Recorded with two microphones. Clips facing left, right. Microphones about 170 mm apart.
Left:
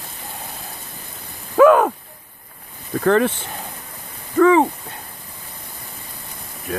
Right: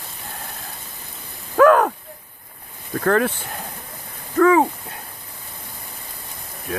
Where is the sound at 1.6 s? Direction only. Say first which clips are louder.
Left 2 dB; 5° left (ahead or behind).